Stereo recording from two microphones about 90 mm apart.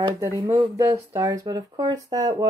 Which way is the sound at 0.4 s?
70° right (ahead or behind).